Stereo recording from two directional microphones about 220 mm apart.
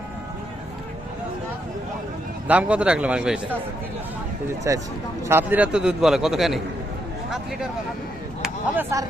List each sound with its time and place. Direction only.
2.5 s a man's voice: 5° right (ahead or behind)
4.7 s a man's voice: 15° right (ahead or behind)
8.4 s a sound: 10° right (ahead or behind)